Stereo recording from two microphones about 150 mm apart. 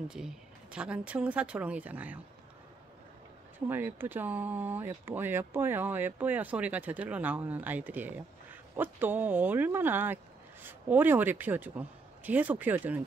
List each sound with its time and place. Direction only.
0.1 s speech: 5° right (ahead or behind)
3.5 s speech: 15° right (ahead or behind)